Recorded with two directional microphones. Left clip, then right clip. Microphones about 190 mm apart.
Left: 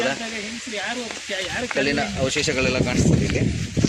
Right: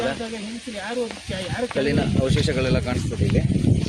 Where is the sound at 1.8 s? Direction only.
10° right (ahead or behind).